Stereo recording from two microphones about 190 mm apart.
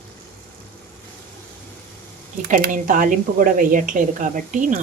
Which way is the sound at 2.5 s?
45° right (ahead or behind).